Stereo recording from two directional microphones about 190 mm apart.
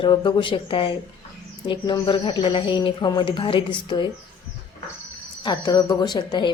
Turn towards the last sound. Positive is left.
turn(degrees=25)  # may be behind; listen again after turning